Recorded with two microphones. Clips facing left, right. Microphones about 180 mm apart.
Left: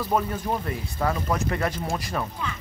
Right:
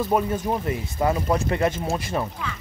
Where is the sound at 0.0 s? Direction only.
20° right (ahead or behind).